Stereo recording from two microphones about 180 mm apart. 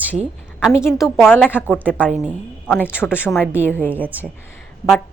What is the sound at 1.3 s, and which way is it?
Speech, 10° left (ahead or behind).